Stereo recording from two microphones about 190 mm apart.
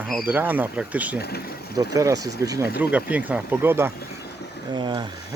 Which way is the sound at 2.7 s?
10° right (ahead or behind).